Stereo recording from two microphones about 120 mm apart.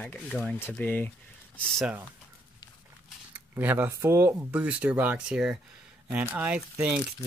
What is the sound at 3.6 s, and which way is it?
Speech, 15° right (ahead or behind).